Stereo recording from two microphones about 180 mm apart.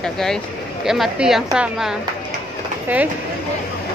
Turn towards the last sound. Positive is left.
turn(degrees=-10)  # may be behind; listen again after turning